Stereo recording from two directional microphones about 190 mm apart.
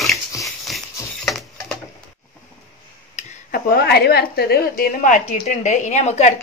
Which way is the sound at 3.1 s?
50° left (ahead or behind).